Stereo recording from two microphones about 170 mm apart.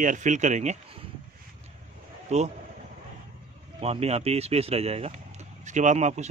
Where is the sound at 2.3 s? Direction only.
40° right (ahead or behind).